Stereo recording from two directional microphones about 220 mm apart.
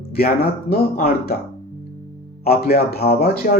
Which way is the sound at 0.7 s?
45° left (ahead or behind).